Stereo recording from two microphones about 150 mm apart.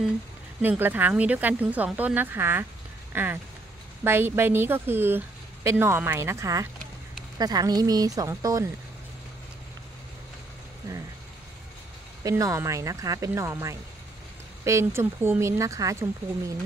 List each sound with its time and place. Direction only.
0.6 s a woman's voice: 15° right (ahead or behind)
10.9 s speech: 20° right (ahead or behind)
12.2 s speech: 20° right (ahead or behind)